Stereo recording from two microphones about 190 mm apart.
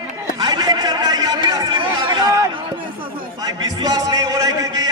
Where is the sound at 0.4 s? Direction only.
20° right (ahead or behind).